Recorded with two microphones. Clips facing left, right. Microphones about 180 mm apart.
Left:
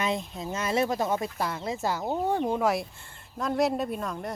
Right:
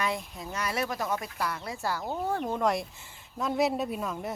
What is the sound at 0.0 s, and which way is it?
Speech, 25° left (ahead or behind).